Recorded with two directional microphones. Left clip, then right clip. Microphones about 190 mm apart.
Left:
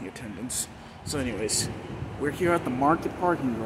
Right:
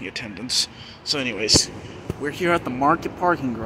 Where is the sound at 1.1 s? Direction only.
Centre (ahead or behind).